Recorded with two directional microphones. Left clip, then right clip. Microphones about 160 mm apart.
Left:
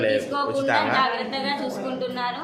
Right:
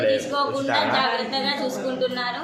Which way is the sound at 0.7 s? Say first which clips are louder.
Even; 30° right (ahead or behind).